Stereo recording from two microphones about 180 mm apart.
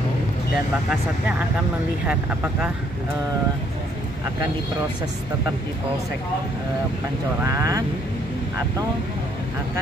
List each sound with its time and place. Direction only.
2.0 s speech: 5° right (ahead or behind)
7.4 s speech: 20° right (ahead or behind)